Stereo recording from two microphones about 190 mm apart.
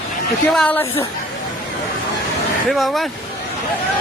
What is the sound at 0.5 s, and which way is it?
Speech, 5° left (ahead or behind).